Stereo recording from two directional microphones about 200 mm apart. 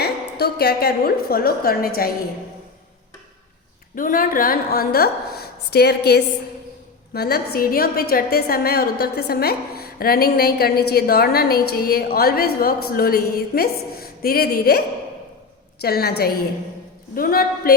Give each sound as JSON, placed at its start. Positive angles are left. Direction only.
{"t": 0.0, "sound": "a woman's voice", "side_deg": 50}
{"t": 3.9, "sound": "a woman's voice", "side_deg": 45}
{"t": 15.8, "sound": "a woman's voice", "side_deg": 50}